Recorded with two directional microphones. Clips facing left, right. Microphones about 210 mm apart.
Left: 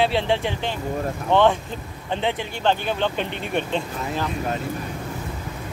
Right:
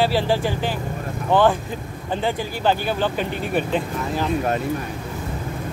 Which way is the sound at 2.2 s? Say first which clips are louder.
Right 2 dB; 5° right (ahead or behind).